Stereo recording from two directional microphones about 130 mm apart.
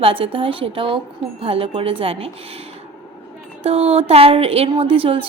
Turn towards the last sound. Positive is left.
turn(degrees=-45)  # may be behind; listen again after turning